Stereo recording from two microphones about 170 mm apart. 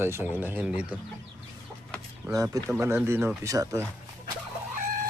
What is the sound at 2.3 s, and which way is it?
Speech, 20° right (ahead or behind).